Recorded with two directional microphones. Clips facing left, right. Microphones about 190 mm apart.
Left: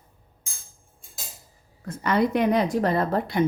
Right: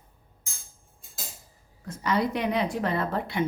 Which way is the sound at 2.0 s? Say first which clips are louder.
Left 4 dB; 55° left (ahead or behind).